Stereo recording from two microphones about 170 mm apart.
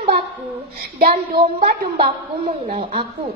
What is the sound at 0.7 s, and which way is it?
Speech, 60° right (ahead or behind).